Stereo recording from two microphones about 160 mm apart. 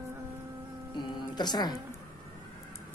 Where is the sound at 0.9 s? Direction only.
25° left (ahead or behind).